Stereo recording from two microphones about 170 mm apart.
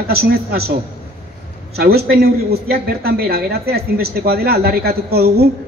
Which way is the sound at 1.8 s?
65° right (ahead or behind).